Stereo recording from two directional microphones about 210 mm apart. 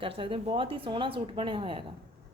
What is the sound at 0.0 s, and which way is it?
Speech, 25° right (ahead or behind).